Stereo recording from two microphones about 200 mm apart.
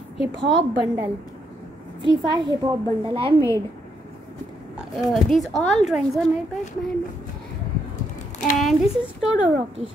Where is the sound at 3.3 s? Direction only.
15° left (ahead or behind).